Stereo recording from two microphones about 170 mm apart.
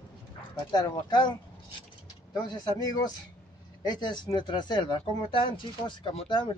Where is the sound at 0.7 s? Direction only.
25° left (ahead or behind).